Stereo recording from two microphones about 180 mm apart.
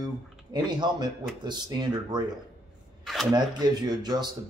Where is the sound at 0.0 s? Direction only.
25° right (ahead or behind).